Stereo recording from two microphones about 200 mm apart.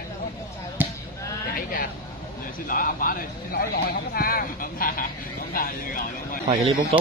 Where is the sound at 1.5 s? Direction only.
45° left (ahead or behind).